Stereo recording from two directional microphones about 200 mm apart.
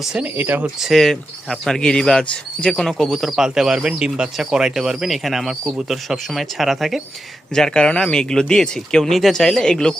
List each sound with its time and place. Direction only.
0.0 s speech: 5° right (ahead or behind)